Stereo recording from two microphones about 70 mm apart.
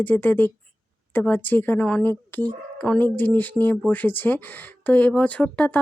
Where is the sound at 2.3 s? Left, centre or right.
Left.